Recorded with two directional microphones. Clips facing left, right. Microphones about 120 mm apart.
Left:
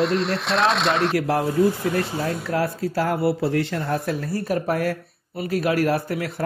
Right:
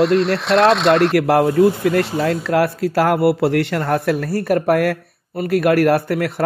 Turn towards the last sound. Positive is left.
turn(degrees=-65)  # may be behind; listen again after turning